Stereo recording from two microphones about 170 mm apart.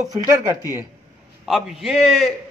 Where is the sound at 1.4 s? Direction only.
Centre (ahead or behind).